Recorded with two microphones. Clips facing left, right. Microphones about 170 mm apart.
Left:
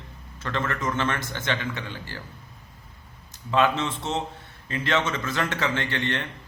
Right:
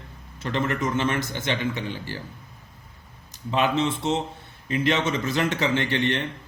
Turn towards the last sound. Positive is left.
turn(degrees=-20)  # may be behind; listen again after turning